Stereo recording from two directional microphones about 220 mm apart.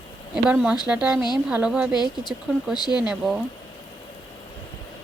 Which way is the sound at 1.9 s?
20° left (ahead or behind).